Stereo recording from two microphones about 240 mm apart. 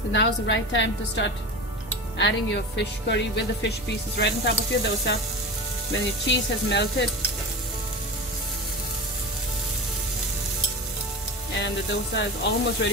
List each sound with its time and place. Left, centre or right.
0.1 s speech: left
6.2 s speech: left
11.6 s speech: left